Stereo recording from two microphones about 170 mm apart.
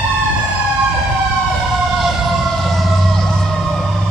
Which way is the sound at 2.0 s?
Centre (ahead or behind).